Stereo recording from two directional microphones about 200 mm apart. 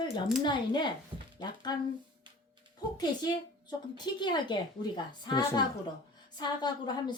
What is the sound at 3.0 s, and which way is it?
Speech, 20° left (ahead or behind).